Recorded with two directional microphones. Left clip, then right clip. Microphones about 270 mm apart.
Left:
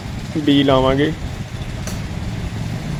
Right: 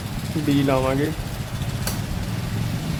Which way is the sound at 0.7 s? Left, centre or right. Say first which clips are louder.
Left 6 dB; centre.